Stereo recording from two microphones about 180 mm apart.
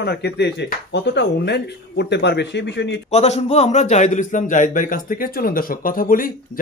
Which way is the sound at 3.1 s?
35° left (ahead or behind).